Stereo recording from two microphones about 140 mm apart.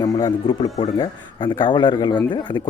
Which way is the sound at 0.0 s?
25° left (ahead or behind).